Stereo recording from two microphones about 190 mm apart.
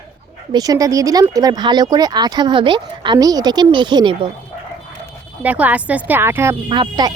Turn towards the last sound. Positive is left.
turn(degrees=-25)  # may be behind; listen again after turning